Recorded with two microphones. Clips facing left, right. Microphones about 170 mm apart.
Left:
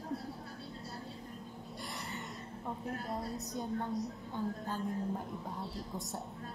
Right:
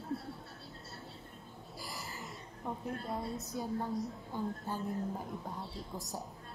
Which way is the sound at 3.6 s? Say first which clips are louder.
Even; 5° right (ahead or behind).